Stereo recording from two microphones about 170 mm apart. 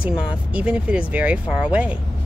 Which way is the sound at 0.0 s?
5° right (ahead or behind).